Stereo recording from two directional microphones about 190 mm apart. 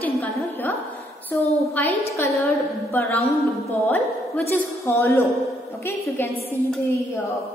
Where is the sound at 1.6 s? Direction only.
10° left (ahead or behind).